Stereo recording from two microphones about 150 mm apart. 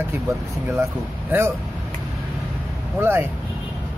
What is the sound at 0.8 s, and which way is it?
Speech, 15° right (ahead or behind).